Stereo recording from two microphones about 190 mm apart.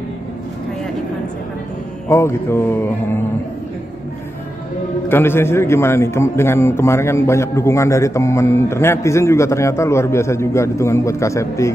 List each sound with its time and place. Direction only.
2.0 s a man's voice: 15° left (ahead or behind)
5.0 s a man's voice: 10° left (ahead or behind)